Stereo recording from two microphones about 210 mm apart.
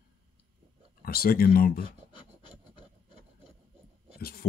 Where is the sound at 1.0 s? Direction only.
45° left (ahead or behind).